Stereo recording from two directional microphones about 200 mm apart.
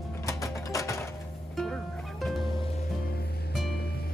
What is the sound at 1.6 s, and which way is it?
Music, centre (ahead or behind).